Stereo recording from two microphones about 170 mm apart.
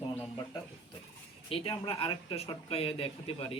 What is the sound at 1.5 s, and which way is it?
Speech, 30° left (ahead or behind).